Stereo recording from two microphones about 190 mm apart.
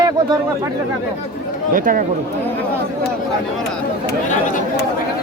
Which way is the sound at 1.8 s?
45° right (ahead or behind).